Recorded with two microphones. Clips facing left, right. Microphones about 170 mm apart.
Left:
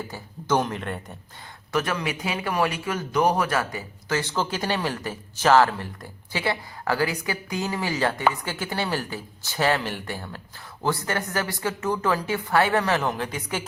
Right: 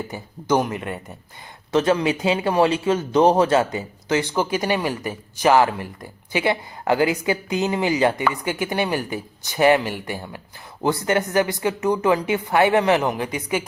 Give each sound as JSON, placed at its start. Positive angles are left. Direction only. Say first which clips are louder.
{"t": 0.1, "sound": "speech", "louder": "right 3 dB", "side_deg": -10}
{"t": 1.7, "sound": "a man's voice", "louder": "right 8 dB", "side_deg": -25}